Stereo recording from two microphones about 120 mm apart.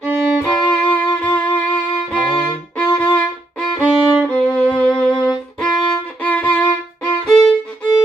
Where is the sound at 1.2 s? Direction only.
15° left (ahead or behind).